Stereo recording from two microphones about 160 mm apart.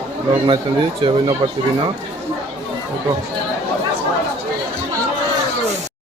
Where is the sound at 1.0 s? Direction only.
30° right (ahead or behind).